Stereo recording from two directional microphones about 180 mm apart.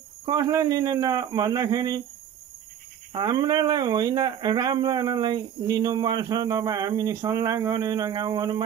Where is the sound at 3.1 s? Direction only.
25° right (ahead or behind).